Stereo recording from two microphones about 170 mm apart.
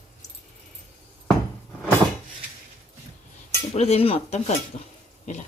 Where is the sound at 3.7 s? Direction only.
40° left (ahead or behind).